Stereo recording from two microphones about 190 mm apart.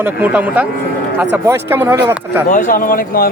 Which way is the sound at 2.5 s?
45° left (ahead or behind).